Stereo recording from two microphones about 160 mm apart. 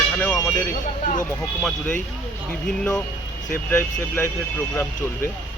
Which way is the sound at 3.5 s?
15° left (ahead or behind).